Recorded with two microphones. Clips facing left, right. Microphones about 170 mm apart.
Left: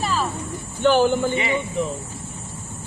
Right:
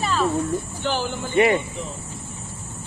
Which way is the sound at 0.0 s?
Centre (ahead or behind).